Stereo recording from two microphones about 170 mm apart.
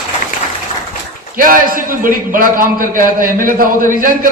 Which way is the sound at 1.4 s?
55° right (ahead or behind).